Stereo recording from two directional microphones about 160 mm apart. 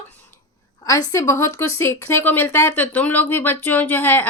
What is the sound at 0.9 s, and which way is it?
Speech, 20° left (ahead or behind).